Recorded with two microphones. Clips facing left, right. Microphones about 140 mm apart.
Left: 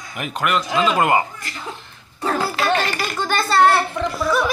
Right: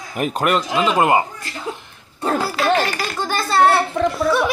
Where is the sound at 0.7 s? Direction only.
20° right (ahead or behind).